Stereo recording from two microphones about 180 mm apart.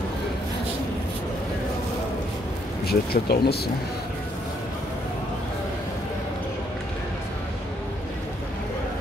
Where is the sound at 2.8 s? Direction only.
60° left (ahead or behind).